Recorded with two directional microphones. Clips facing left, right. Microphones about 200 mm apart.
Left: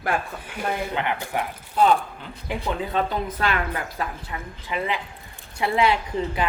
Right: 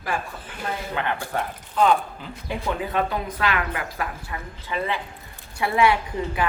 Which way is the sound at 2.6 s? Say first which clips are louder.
Even; 25° left (ahead or behind).